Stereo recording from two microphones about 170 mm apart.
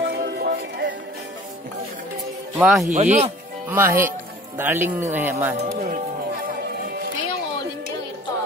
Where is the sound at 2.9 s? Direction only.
45° right (ahead or behind).